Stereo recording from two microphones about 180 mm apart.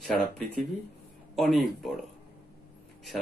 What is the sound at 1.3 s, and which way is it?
Speech, centre (ahead or behind).